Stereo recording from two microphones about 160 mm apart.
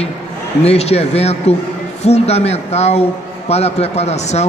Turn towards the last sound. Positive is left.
turn(degrees=45)  # may be behind; listen again after turning